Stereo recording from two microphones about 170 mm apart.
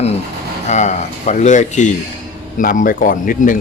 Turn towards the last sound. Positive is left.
turn(degrees=50)  # may be behind; listen again after turning